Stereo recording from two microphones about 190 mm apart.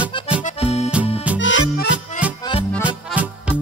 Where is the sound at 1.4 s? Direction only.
75° left (ahead or behind).